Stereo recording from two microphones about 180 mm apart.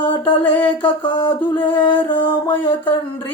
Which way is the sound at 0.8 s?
30° left (ahead or behind).